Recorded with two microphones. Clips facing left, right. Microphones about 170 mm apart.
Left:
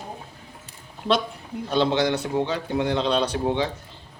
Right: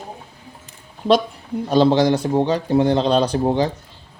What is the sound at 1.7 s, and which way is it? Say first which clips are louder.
Speech: right 7 dB; 40° right (ahead or behind).